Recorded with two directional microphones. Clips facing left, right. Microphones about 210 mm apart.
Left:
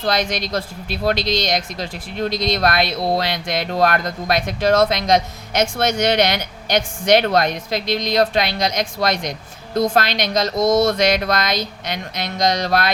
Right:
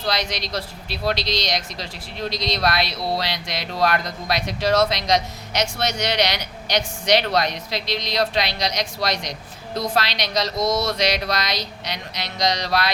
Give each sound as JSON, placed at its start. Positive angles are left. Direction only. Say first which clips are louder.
{"t": 0.0, "sound": "speech", "louder": "left 5 dB", "side_deg": 50}